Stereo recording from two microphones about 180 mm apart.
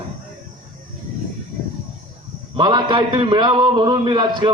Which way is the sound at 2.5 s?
25° right (ahead or behind).